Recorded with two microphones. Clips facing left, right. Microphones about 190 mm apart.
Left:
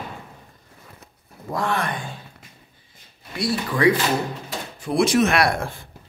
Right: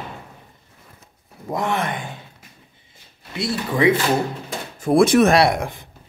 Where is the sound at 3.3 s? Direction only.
25° right (ahead or behind).